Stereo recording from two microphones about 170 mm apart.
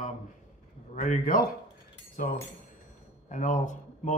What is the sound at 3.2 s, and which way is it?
Speech, 45° left (ahead or behind).